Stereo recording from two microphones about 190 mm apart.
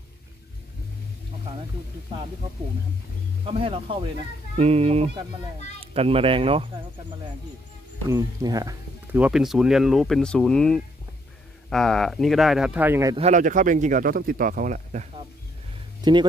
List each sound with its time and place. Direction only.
3.4 s speech: 30° right (ahead or behind)
8.1 s speech: 20° right (ahead or behind)
9.2 s speech: centre (ahead or behind)
13.1 s speech: 35° right (ahead or behind)
16.0 s speech: 25° right (ahead or behind)